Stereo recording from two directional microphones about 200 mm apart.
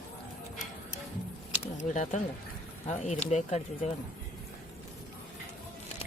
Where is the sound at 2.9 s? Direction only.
35° left (ahead or behind).